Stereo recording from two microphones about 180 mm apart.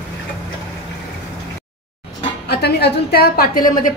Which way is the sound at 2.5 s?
65° left (ahead or behind).